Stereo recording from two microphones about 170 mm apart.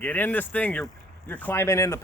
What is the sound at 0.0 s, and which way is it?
Speech, 10° left (ahead or behind).